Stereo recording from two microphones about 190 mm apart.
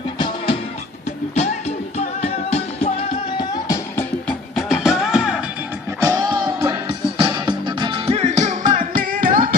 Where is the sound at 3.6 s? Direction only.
15° left (ahead or behind).